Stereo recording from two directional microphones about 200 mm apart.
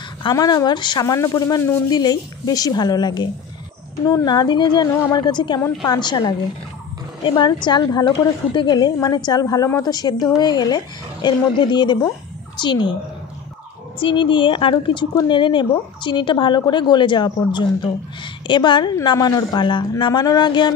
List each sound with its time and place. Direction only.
0.2 s speech: 20° left (ahead or behind)
13.9 s speech: 25° left (ahead or behind)